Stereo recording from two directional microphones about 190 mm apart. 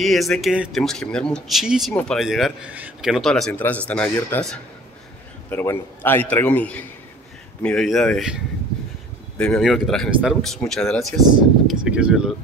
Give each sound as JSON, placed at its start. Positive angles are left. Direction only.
{"t": 0.0, "sound": "a man's voice", "side_deg": 0}
{"t": 9.4, "sound": "speech", "side_deg": 0}